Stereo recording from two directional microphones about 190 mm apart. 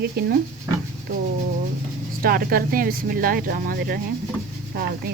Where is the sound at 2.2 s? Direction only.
50° right (ahead or behind).